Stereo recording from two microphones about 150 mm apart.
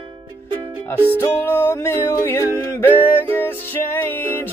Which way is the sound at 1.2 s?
15° left (ahead or behind).